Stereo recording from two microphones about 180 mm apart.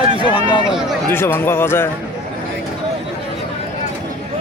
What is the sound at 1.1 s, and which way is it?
Speech, 10° left (ahead or behind).